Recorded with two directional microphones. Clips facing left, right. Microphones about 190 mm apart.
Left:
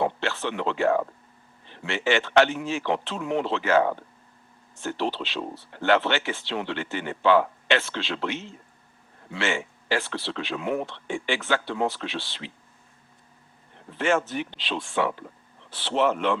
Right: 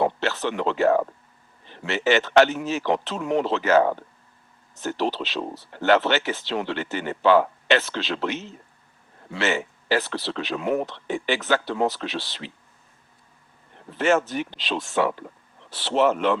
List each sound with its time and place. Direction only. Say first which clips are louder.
0.0 s speech: right 3 dB; 40° right (ahead or behind)
13.9 s speech: right 3 dB; 40° right (ahead or behind)